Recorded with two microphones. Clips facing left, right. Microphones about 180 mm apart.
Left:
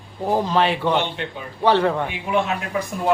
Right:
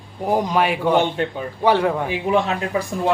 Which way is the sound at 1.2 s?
45° right (ahead or behind).